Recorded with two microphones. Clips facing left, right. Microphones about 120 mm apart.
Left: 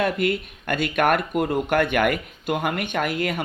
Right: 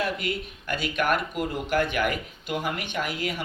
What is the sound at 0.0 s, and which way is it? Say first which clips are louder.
Speech: left 6 dB; 55° left (ahead or behind).